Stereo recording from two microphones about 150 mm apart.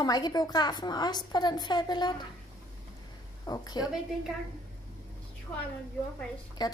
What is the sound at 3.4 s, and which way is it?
Speech, 25° left (ahead or behind).